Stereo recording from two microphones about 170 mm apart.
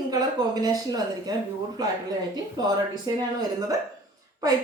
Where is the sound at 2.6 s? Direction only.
25° right (ahead or behind).